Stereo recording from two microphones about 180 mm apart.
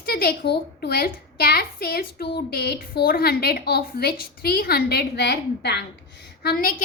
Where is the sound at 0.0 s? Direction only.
60° left (ahead or behind).